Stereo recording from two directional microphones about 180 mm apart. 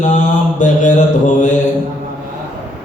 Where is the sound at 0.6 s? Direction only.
45° left (ahead or behind).